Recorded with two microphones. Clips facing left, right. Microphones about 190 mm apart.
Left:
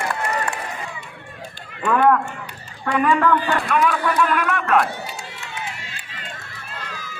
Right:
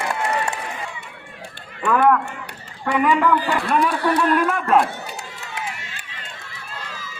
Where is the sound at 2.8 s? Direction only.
15° right (ahead or behind).